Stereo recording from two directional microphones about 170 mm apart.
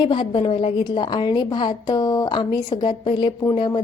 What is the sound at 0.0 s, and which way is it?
A woman's voice, 30° left (ahead or behind).